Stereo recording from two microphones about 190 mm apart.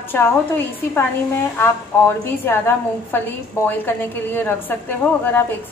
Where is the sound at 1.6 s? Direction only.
10° left (ahead or behind).